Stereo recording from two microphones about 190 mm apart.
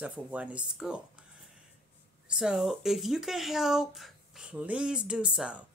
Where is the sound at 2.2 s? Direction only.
5° right (ahead or behind).